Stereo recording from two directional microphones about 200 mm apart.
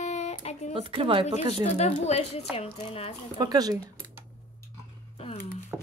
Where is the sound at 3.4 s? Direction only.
20° right (ahead or behind).